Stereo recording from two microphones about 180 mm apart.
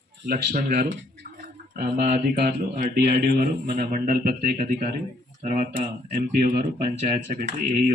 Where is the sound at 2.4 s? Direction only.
55° right (ahead or behind).